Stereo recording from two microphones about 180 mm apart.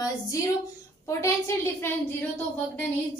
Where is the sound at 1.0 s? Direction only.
15° left (ahead or behind).